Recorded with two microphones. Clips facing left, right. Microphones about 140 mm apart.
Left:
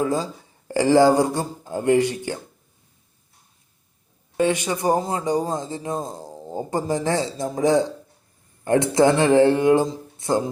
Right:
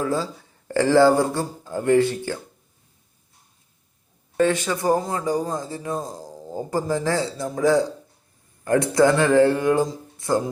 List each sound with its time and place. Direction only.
0.0 s speech: 15° left (ahead or behind)
4.4 s speech: 15° left (ahead or behind)